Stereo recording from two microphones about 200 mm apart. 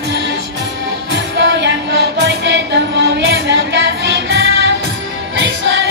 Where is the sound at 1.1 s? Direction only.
70° right (ahead or behind).